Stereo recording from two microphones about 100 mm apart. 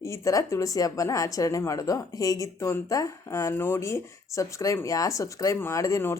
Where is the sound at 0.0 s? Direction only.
30° left (ahead or behind).